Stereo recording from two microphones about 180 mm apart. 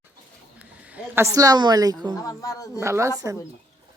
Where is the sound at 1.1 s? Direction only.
20° right (ahead or behind).